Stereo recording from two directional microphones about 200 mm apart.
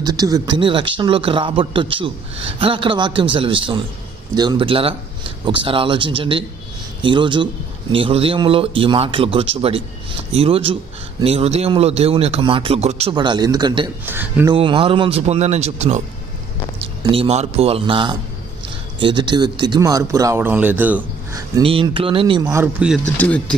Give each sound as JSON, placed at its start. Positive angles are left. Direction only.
{"t": 0.0, "sound": "a man's voice", "side_deg": -20}
{"t": 14.0, "sound": "speech", "side_deg": -10}
{"t": 14.5, "sound": "a man's voice", "side_deg": -25}
{"t": 17.1, "sound": "a man's voice", "side_deg": -30}
{"t": 21.6, "sound": "a man's voice", "side_deg": -25}
{"t": 23.1, "sound": "speech", "side_deg": 5}